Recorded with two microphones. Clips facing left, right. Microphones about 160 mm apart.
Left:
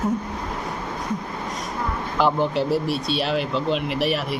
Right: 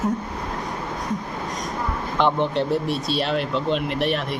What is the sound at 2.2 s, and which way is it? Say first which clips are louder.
Speech: even; 5° left (ahead or behind).